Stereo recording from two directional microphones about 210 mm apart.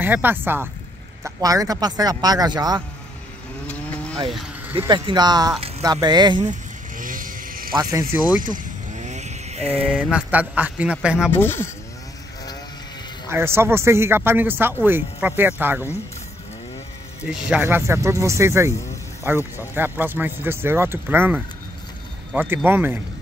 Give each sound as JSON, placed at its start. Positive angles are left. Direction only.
{"t": 0.0, "sound": "speech", "side_deg": -10}
{"t": 4.3, "sound": "a sound", "side_deg": 0}
{"t": 4.7, "sound": "speech", "side_deg": -20}
{"t": 7.0, "sound": "vehicle", "side_deg": -40}
{"t": 7.7, "sound": "speech", "side_deg": -15}
{"t": 8.4, "sound": "vehicle", "side_deg": -40}
{"t": 9.8, "sound": "a sound", "side_deg": -5}
{"t": 11.3, "sound": "speech", "side_deg": 10}
{"t": 13.3, "sound": "speech", "side_deg": -10}
{"t": 17.2, "sound": "speech", "side_deg": -5}